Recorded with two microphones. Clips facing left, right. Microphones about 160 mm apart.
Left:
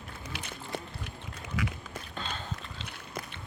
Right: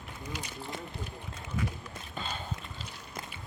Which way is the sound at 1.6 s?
90° left.